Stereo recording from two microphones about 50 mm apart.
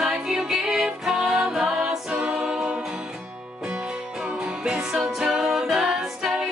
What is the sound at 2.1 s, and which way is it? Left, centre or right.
A capella, right.